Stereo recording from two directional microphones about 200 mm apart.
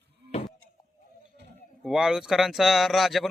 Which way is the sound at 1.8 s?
Centre (ahead or behind).